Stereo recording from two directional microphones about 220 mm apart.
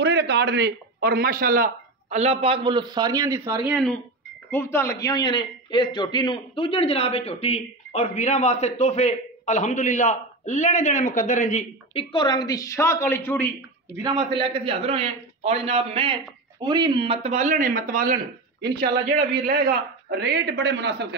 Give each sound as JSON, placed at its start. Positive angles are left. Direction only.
{"t": 0.0, "sound": "a man's voice", "side_deg": -50}
{"t": 3.6, "sound": "a man's voice", "side_deg": 0}
{"t": 13.9, "sound": "a man's voice", "side_deg": -20}